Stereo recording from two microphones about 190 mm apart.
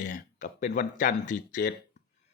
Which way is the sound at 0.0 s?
40° left (ahead or behind).